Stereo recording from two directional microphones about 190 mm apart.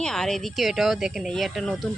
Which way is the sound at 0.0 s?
5° left (ahead or behind).